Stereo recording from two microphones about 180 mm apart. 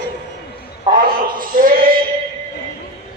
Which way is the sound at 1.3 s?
50° right (ahead or behind).